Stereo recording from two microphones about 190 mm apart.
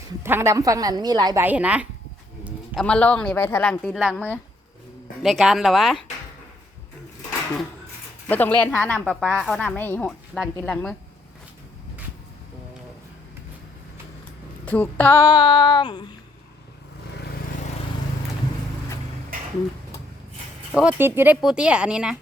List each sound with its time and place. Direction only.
0.2 s a woman's voice: 15° right (ahead or behind)
1.5 s speech: 5° right (ahead or behind)
2.7 s speech: 5° left (ahead or behind)
8.3 s speech: 10° left (ahead or behind)
14.6 s a sound: 10° left (ahead or behind); by 16.1 s 25° left (ahead or behind)
20.7 s speech: 10° right (ahead or behind)